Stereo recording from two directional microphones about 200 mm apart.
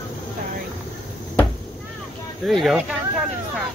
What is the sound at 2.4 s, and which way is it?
Speech, centre (ahead or behind).